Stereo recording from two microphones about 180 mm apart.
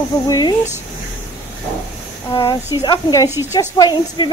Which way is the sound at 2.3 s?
30° left (ahead or behind).